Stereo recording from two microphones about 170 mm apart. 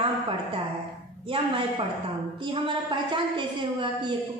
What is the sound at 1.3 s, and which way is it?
A woman's voice, 30° right (ahead or behind).